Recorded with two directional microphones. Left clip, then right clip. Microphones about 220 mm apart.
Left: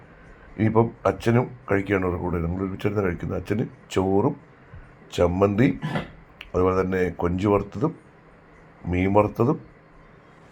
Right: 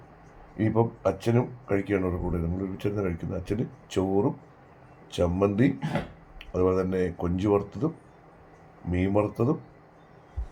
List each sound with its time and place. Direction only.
0.5 s speech: 20° left (ahead or behind)
8.9 s speech: 15° left (ahead or behind)